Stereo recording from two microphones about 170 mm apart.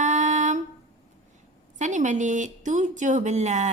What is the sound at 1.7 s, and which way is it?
A woman's voice, 45° right (ahead or behind).